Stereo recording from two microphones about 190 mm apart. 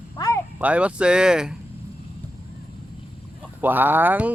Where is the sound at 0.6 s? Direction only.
5° right (ahead or behind).